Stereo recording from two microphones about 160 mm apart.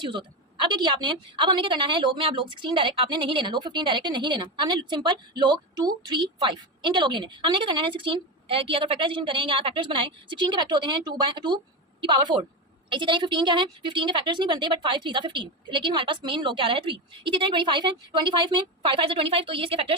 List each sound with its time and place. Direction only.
0.0 s a woman's voice: 30° right (ahead or behind)